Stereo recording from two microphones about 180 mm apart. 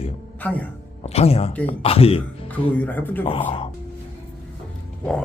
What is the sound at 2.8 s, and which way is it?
Speech, 10° left (ahead or behind).